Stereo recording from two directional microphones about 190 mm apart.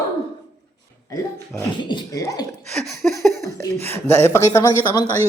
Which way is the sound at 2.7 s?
Centre (ahead or behind).